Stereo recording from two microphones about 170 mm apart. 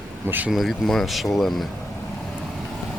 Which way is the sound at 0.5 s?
Centre (ahead or behind).